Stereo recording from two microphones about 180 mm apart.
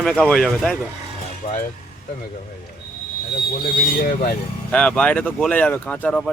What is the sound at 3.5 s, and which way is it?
Speech, 55° left (ahead or behind).